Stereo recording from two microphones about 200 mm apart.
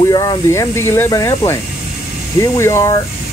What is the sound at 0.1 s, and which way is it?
Speech, 20° left (ahead or behind).